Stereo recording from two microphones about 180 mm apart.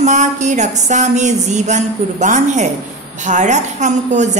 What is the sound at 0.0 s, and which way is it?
A woman's voice, 40° right (ahead or behind).